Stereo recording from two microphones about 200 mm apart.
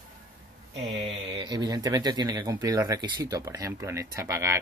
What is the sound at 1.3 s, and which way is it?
Speech, 20° right (ahead or behind).